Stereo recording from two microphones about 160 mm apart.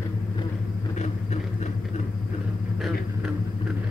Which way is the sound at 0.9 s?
45° left (ahead or behind).